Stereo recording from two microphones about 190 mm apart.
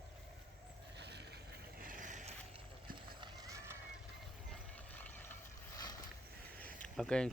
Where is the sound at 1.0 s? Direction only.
60° right (ahead or behind).